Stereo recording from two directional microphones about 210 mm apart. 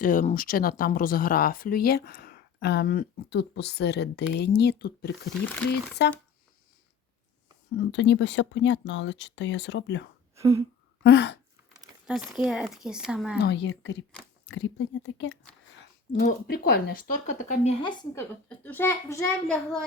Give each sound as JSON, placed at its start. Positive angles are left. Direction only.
{"t": 0.0, "sound": "speech", "side_deg": 40}
{"t": 7.8, "sound": "speech", "side_deg": 60}
{"t": 10.3, "sound": "a sound", "side_deg": -15}
{"t": 11.0, "sound": "speech", "side_deg": 55}
{"t": 12.0, "sound": "speech", "side_deg": -5}
{"t": 13.4, "sound": "speech", "side_deg": 55}
{"t": 16.2, "sound": "speech", "side_deg": 45}
{"t": 18.1, "sound": "a child's voice", "side_deg": 10}